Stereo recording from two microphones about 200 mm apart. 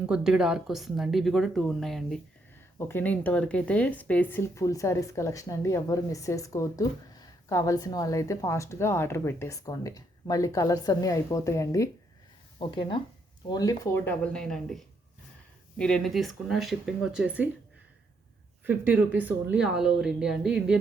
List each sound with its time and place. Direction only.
0.0 s speech: 5° right (ahead or behind)
18.6 s speech: 10° right (ahead or behind)